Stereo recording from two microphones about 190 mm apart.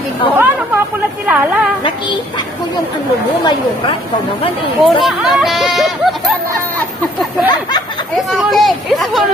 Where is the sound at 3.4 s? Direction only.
25° left (ahead or behind).